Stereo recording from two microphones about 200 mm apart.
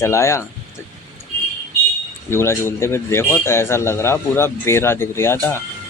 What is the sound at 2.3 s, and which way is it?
A man's voice, 10° left (ahead or behind).